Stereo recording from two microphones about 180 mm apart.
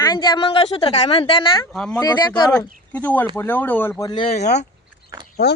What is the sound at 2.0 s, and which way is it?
Speech, 25° left (ahead or behind).